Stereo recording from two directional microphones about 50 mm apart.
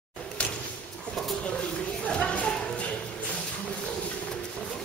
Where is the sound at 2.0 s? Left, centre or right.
Left.